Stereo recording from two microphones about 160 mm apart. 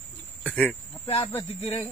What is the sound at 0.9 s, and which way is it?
Speech, 35° left (ahead or behind).